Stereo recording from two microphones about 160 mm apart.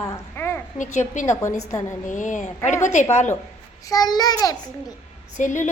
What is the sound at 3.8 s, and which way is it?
Babbling, 25° left (ahead or behind).